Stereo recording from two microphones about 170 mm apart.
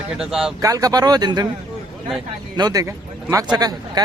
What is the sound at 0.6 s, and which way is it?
Speech, 20° right (ahead or behind).